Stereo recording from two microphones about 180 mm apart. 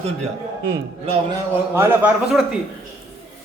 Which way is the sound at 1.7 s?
15° right (ahead or behind).